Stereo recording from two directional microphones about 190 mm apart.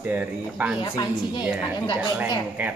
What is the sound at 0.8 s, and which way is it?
Speech, 20° left (ahead or behind).